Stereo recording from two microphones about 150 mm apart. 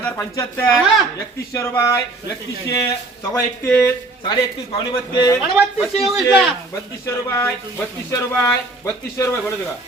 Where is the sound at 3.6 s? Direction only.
15° left (ahead or behind).